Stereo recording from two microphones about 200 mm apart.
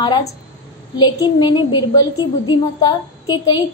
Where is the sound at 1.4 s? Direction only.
20° left (ahead or behind).